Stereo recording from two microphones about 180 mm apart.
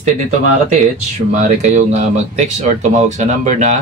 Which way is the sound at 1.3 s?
40° right (ahead or behind).